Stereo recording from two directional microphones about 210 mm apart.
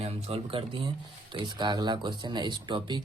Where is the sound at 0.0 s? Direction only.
30° right (ahead or behind).